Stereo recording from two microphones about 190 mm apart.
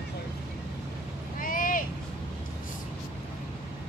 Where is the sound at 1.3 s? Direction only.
45° left (ahead or behind).